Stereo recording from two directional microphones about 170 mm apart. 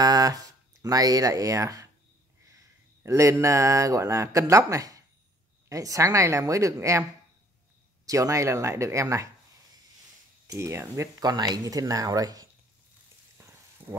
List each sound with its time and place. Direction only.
0.0 s speech: 20° right (ahead or behind)
10.4 s speech: 15° right (ahead or behind)